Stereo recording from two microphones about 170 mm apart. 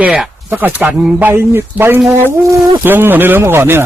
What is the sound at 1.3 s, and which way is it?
Speech, 15° right (ahead or behind).